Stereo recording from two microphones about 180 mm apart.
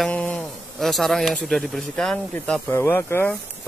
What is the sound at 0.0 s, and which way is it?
Speech, 5° left (ahead or behind).